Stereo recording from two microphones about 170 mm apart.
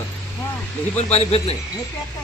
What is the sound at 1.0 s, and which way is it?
Speech, 40° left (ahead or behind).